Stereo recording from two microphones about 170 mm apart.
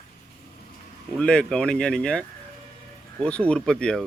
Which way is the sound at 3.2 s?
5° left (ahead or behind).